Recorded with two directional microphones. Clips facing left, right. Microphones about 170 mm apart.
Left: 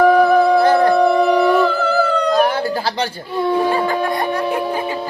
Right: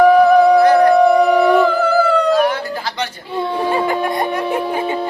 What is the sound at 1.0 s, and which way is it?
Howl, centre (ahead or behind).